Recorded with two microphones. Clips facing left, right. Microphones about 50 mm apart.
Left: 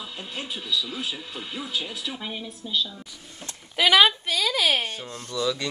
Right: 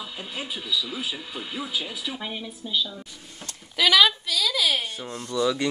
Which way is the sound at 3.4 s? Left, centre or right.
Left.